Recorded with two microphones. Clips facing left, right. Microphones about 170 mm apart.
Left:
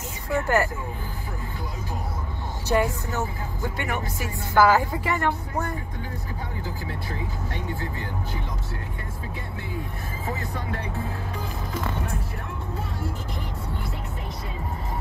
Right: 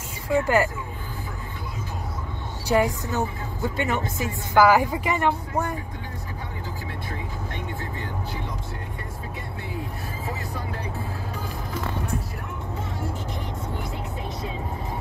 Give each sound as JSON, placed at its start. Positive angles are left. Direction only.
{"t": 0.3, "sound": "speech", "side_deg": -10}
{"t": 2.7, "sound": "speech", "side_deg": -15}